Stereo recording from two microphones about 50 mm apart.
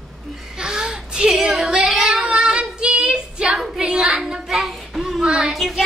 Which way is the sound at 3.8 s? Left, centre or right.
Centre.